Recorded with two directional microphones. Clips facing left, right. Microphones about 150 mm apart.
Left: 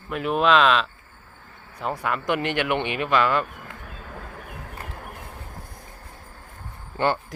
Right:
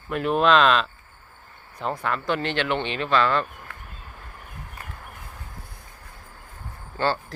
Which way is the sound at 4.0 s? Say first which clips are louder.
Left 6 dB; 90° left.